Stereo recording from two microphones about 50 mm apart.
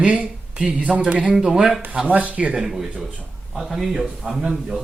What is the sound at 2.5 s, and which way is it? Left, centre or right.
A man's voice, centre.